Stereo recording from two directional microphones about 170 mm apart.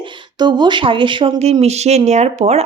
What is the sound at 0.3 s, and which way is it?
Speech, 25° right (ahead or behind).